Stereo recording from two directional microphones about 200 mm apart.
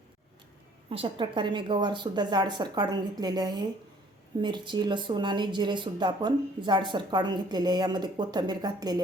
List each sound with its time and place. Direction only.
0.9 s speech: 25° right (ahead or behind)